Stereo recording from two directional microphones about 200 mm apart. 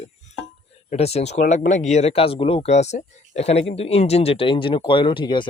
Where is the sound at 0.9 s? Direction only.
30° left (ahead or behind).